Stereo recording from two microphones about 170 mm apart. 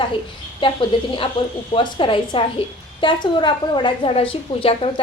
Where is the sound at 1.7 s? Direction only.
30° left (ahead or behind).